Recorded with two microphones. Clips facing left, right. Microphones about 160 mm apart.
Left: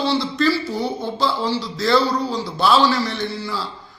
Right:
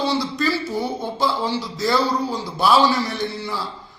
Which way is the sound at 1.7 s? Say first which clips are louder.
Left 3 dB; 15° right (ahead or behind).